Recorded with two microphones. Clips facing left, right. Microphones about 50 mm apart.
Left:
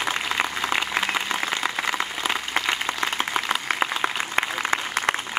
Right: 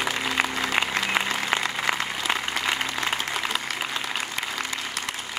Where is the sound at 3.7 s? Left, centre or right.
Left.